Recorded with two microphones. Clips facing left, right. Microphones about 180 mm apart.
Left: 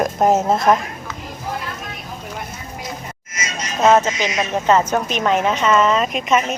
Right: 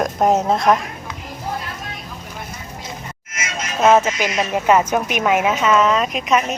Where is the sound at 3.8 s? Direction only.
10° right (ahead or behind).